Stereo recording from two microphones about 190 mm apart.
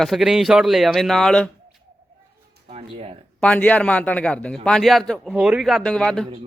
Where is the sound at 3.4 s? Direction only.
5° left (ahead or behind).